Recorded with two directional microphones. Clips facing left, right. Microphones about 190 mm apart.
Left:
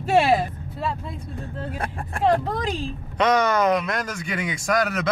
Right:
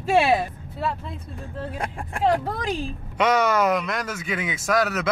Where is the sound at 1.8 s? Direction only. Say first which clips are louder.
Left 1 dB; 10° right (ahead or behind).